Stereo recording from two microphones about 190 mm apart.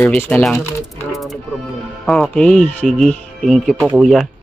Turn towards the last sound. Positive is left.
turn(degrees=0)  # may be behind; listen again after turning